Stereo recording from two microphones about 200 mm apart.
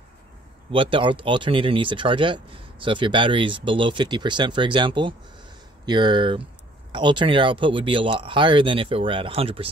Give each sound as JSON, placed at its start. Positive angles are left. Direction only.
{"t": 0.7, "sound": "speech", "side_deg": -25}